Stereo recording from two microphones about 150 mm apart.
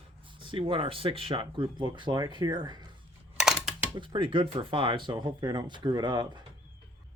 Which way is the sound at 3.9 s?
35° right (ahead or behind).